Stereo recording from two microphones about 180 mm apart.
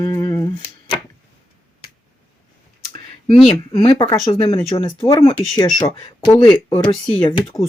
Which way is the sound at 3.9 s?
30° left (ahead or behind).